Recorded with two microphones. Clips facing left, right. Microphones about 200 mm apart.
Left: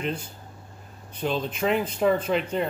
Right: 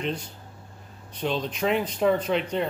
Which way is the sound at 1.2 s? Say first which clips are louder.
Even; 5° left (ahead or behind).